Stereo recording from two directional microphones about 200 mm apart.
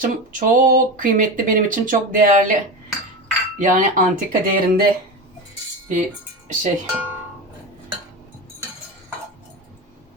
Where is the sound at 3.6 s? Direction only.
40° right (ahead or behind).